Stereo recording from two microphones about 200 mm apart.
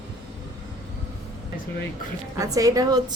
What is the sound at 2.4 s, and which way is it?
Speech, 15° right (ahead or behind).